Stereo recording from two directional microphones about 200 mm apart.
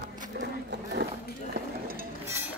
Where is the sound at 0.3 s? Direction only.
55° right (ahead or behind).